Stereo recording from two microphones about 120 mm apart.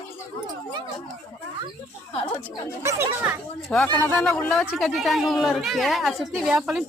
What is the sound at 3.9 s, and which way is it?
Speech, 20° left (ahead or behind).